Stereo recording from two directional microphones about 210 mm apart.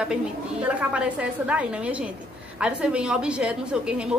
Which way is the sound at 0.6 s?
5° right (ahead or behind).